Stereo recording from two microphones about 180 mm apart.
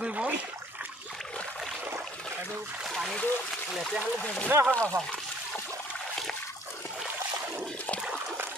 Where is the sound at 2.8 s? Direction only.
5° right (ahead or behind).